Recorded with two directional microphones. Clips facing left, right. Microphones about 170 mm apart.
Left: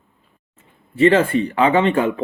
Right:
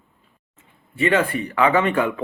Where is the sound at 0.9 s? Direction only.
30° left (ahead or behind).